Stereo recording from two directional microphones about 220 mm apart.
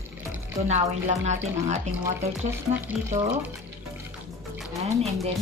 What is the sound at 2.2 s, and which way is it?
Speech, 10° right (ahead or behind).